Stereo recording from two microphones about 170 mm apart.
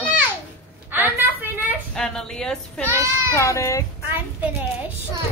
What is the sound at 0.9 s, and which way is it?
Speech, 10° right (ahead or behind).